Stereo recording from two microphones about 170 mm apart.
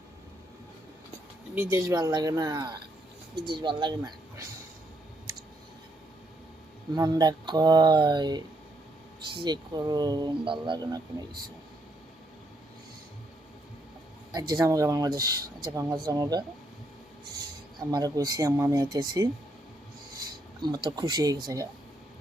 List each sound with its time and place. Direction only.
1.5 s speech: 15° right (ahead or behind)
6.9 s speech: 25° right (ahead or behind)
14.3 s speech: 20° right (ahead or behind)
17.7 s speech: 20° right (ahead or behind)
20.6 s speech: 25° right (ahead or behind)